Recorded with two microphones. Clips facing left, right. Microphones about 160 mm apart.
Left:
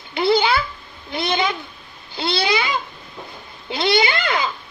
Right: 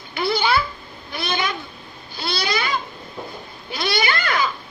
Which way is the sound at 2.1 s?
25° left (ahead or behind).